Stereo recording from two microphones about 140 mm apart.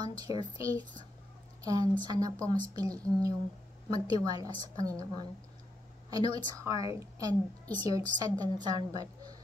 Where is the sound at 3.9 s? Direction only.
25° right (ahead or behind).